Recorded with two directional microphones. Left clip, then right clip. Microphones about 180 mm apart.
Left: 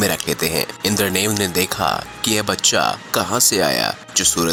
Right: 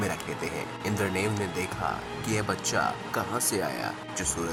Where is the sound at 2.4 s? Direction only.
15° left (ahead or behind).